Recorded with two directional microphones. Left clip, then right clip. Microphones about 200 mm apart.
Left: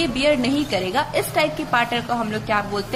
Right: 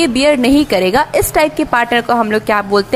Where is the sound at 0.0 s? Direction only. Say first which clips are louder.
Right 8 dB; 45° right (ahead or behind).